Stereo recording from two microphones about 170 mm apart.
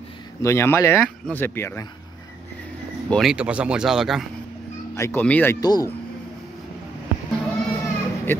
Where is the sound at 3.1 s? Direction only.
5° right (ahead or behind).